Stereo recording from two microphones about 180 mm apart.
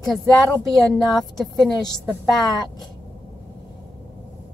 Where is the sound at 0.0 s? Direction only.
Centre (ahead or behind).